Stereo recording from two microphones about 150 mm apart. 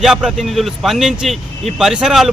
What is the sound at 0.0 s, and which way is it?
Speech, 5° right (ahead or behind).